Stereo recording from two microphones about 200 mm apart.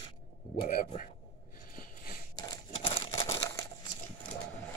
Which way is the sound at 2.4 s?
20° left (ahead or behind).